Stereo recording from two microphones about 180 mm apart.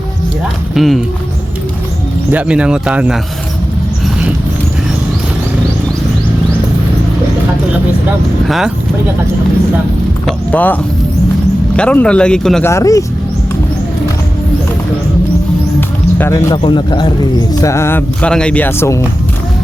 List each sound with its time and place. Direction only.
0.7 s speech: centre (ahead or behind)
2.3 s speech: 5° right (ahead or behind)
8.4 s speech: centre (ahead or behind)
10.2 s speech: 10° left (ahead or behind)
11.8 s speech: 5° left (ahead or behind)
12.6 s speech: 15° left (ahead or behind)
16.1 s speech: 15° left (ahead or behind)